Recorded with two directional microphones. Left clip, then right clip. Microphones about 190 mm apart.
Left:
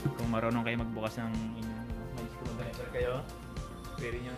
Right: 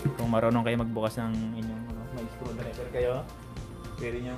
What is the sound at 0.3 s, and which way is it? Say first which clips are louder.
Speech: right 7 dB; 20° right (ahead or behind).